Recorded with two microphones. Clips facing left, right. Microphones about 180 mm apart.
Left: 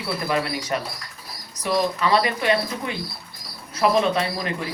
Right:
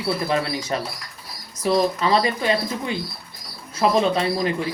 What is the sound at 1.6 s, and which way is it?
Speech, 30° right (ahead or behind).